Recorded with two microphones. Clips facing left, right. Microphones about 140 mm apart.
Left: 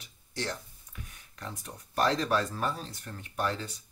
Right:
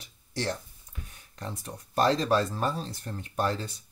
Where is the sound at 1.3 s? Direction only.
30° right (ahead or behind).